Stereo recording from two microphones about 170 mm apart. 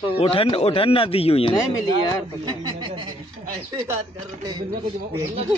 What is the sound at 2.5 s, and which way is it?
Speech, 25° right (ahead or behind).